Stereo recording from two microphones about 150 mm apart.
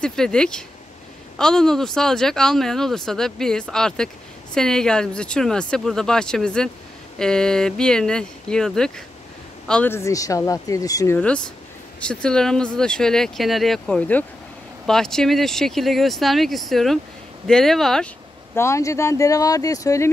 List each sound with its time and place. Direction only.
0.0 s speech: 5° left (ahead or behind); by 11.1 s 20° left (ahead or behind)
11.1 s speech: 5° left (ahead or behind)
18.5 s speech: 20° left (ahead or behind)